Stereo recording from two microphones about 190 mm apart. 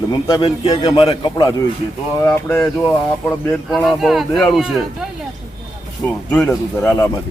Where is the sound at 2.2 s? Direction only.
10° left (ahead or behind).